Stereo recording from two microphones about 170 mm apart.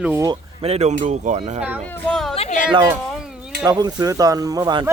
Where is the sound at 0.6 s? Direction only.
40° right (ahead or behind).